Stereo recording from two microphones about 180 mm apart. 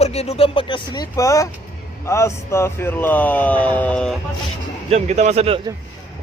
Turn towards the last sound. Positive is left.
turn(degrees=-35)  # may be behind; listen again after turning